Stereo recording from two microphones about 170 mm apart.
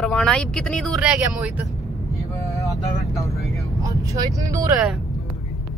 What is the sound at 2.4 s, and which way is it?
Vehicle, 20° left (ahead or behind).